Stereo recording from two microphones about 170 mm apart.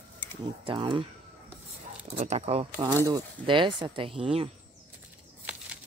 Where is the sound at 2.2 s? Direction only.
40° right (ahead or behind).